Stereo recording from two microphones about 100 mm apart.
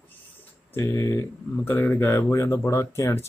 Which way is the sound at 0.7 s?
30° left (ahead or behind).